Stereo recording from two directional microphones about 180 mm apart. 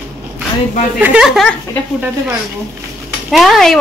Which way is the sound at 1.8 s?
10° left (ahead or behind).